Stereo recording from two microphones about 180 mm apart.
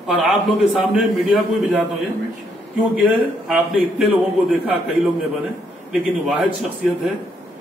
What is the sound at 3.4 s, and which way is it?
A man's voice, centre (ahead or behind).